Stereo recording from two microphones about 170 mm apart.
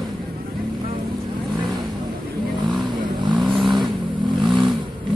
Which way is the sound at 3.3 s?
Centre (ahead or behind).